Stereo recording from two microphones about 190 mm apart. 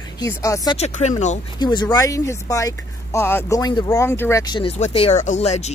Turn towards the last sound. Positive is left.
turn(degrees=35)  # may be behind; listen again after turning